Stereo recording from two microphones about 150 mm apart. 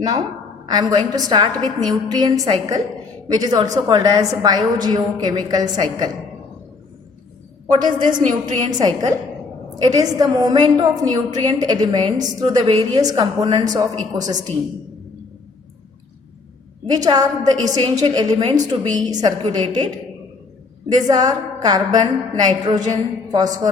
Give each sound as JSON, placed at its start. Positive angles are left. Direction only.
{"t": 0.6, "sound": "a woman's voice", "side_deg": -25}
{"t": 7.9, "sound": "a woman's voice", "side_deg": -30}
{"t": 16.9, "sound": "a woman's voice", "side_deg": -25}
{"t": 20.9, "sound": "a woman's voice", "side_deg": -25}